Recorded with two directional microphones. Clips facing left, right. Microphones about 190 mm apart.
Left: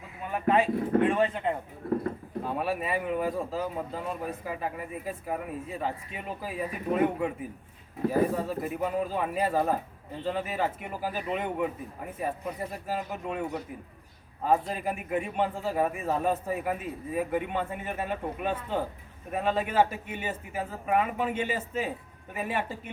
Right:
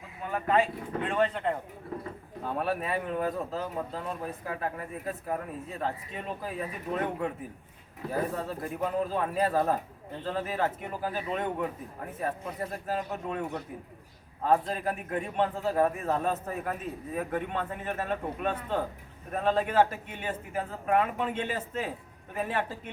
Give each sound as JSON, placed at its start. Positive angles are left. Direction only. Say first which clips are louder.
{"t": 0.3, "sound": "speech", "louder": "left 2 dB", "side_deg": 20}
{"t": 14.7, "sound": "speech", "louder": "left 1 dB", "side_deg": 5}